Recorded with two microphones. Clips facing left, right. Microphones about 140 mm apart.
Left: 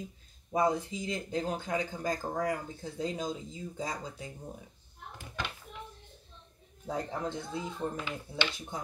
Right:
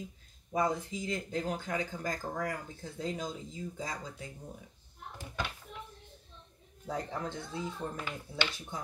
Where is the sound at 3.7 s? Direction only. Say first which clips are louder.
Left 3 dB; 20° left (ahead or behind).